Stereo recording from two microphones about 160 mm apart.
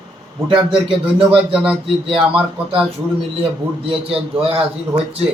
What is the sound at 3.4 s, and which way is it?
A man's voice, 35° right (ahead or behind).